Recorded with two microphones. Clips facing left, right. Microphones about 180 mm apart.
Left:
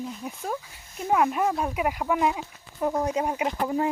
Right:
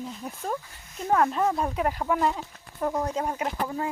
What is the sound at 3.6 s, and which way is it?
Baby cry, 20° left (ahead or behind).